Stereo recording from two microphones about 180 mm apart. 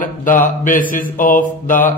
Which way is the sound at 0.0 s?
50° left (ahead or behind).